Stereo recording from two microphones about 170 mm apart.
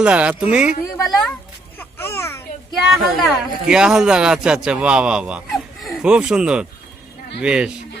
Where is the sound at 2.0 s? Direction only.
15° left (ahead or behind).